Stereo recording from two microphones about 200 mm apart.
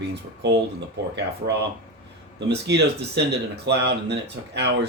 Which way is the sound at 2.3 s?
60° right (ahead or behind).